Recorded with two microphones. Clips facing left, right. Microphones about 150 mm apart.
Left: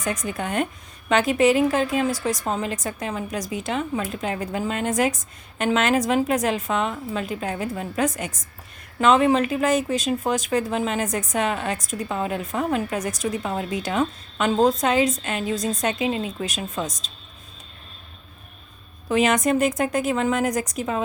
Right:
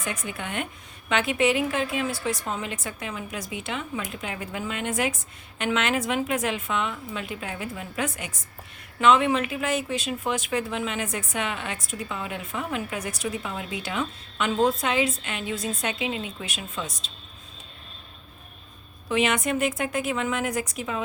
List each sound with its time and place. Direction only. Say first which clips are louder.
0.0 s a woman's voice: left 6 dB; 40° left (ahead or behind)
19.0 s a woman's voice: left 5 dB; 40° left (ahead or behind)